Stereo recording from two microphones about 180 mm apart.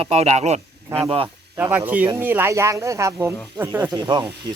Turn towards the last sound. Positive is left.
turn(degrees=-25)  # may be behind; listen again after turning